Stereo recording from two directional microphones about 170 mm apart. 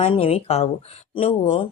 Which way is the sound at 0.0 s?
35° left (ahead or behind).